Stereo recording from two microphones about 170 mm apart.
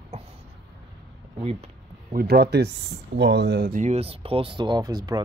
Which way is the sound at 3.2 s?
85° right.